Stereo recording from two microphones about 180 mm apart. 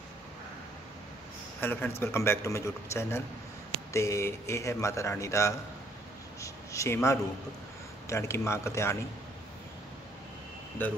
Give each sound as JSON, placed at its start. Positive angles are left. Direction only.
{"t": 1.6, "sound": "a man's voice", "side_deg": 10}